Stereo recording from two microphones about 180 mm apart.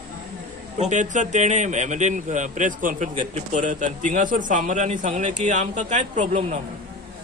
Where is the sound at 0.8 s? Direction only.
40° right (ahead or behind).